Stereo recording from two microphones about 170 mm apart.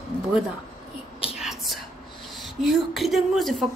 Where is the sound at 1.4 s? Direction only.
Centre (ahead or behind).